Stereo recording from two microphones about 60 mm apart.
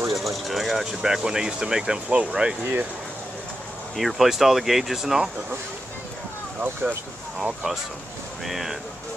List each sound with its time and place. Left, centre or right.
0.1 s speech: centre
2.6 s speech: right
3.9 s speech: centre
6.6 s speech: right
8.5 s speech: centre